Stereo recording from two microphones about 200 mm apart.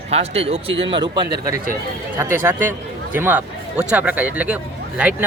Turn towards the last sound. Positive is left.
turn(degrees=-5)  # may be behind; listen again after turning